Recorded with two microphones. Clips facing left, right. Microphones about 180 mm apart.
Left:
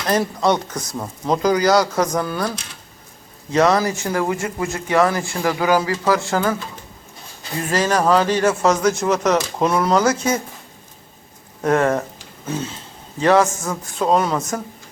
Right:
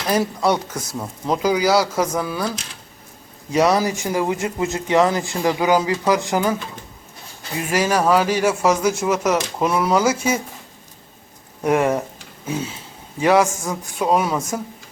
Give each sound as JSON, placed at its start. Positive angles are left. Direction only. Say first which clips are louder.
{"t": 0.0, "sound": "speech", "louder": "left 1 dB", "side_deg": -5}
{"t": 3.5, "sound": "speech", "louder": "left 1 dB", "side_deg": -15}
{"t": 7.7, "sound": "speech", "louder": "even", "side_deg": -10}
{"t": 11.6, "sound": "speech", "louder": "left 1 dB", "side_deg": -10}